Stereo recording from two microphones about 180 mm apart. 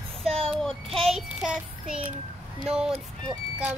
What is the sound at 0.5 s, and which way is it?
Child singing, 5° left (ahead or behind).